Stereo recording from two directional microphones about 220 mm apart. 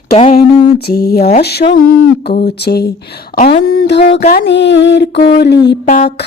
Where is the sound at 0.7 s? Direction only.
45° left (ahead or behind).